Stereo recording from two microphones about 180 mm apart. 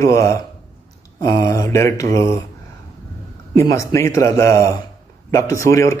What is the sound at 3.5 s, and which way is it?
A man's voice, 15° left (ahead or behind).